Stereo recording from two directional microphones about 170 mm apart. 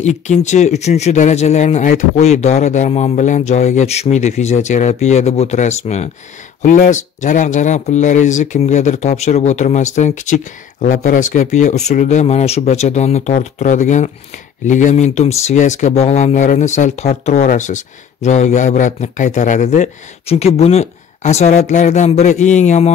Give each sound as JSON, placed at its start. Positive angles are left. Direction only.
{"t": 0.0, "sound": "speech", "side_deg": 45}